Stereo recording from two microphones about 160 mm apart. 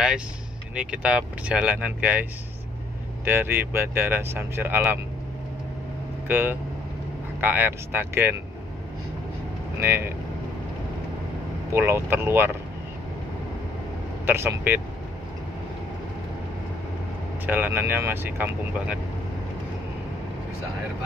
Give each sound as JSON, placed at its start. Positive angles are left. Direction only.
{"t": 0.7, "sound": "speech", "side_deg": -5}
{"t": 3.3, "sound": "speech", "side_deg": -15}
{"t": 6.2, "sound": "speech", "side_deg": -10}
{"t": 9.8, "sound": "speech", "side_deg": -15}
{"t": 11.7, "sound": "speech", "side_deg": -15}
{"t": 14.2, "sound": "speech", "side_deg": -15}
{"t": 17.5, "sound": "speech", "side_deg": -10}